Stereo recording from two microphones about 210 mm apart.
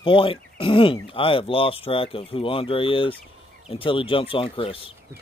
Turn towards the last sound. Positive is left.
turn(degrees=25)  # may be behind; listen again after turning